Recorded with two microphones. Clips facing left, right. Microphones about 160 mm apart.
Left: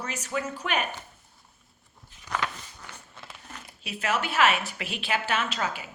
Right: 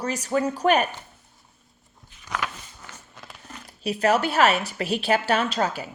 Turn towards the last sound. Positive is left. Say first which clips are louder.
# right 6 dB
turn(degrees=-40)  # may be behind; listen again after turning